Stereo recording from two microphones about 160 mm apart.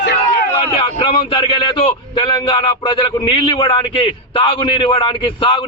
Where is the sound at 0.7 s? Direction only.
30° left (ahead or behind).